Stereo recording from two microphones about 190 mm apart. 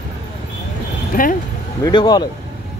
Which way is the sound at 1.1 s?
45° left (ahead or behind).